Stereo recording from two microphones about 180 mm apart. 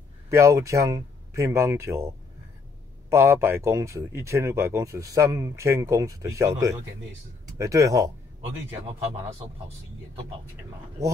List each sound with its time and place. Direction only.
0.3 s speech: 15° right (ahead or behind)
3.1 s speech: 15° right (ahead or behind)